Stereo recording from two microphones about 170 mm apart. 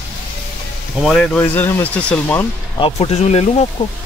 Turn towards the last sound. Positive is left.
turn(degrees=40)  # may be behind; listen again after turning